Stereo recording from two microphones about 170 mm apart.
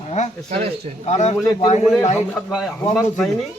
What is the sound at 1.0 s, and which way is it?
Speech, 40° left (ahead or behind).